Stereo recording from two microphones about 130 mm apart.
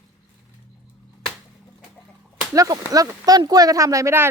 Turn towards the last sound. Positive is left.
turn(degrees=-20)  # may be behind; listen again after turning